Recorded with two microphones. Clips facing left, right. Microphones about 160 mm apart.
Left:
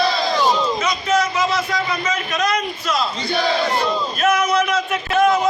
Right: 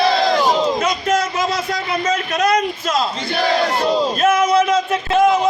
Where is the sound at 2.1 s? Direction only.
35° right (ahead or behind).